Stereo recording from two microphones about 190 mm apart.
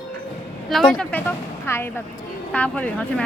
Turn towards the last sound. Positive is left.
turn(degrees=5)  # may be behind; listen again after turning